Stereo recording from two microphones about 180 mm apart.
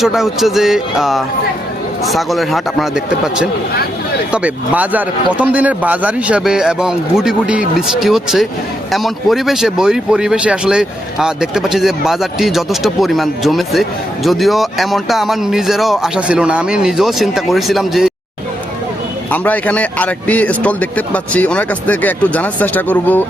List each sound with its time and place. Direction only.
0.0 s a man's voice: centre (ahead or behind)
19.3 s speech: 10° left (ahead or behind)